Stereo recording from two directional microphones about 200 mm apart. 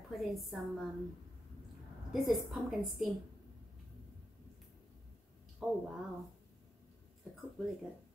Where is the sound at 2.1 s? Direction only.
Centre (ahead or behind).